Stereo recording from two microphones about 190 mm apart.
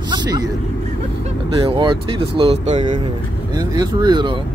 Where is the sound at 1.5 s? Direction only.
25° right (ahead or behind).